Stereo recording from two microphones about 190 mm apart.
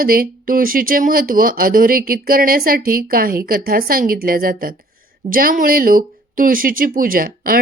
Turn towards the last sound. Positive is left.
turn(degrees=-50)  # may be behind; listen again after turning